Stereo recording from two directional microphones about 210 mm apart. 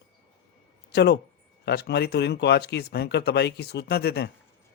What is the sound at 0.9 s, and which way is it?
Speech, 50° left (ahead or behind).